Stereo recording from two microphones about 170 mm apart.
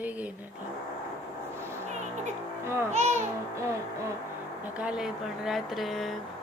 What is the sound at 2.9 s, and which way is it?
Speech, 40° right (ahead or behind).